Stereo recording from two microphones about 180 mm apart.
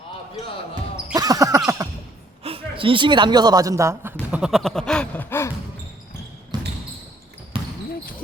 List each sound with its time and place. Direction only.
1.1 s music: 20° right (ahead or behind)
2.4 s a man's voice: 30° right (ahead or behind); by 5.5 s 10° left (ahead or behind)
6.5 s basketball bounce: 20° right (ahead or behind)